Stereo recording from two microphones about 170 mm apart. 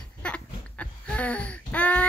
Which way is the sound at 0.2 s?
5° left (ahead or behind).